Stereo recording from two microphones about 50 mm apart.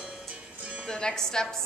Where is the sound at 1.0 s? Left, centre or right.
Centre.